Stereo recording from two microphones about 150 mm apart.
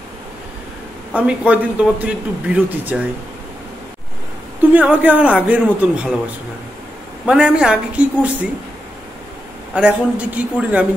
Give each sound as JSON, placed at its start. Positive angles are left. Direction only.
{"t": 1.1, "sound": "a man's voice", "side_deg": -10}
{"t": 4.7, "sound": "a man's voice", "side_deg": -10}
{"t": 7.2, "sound": "a man's voice", "side_deg": -5}
{"t": 9.8, "sound": "a man's voice", "side_deg": -10}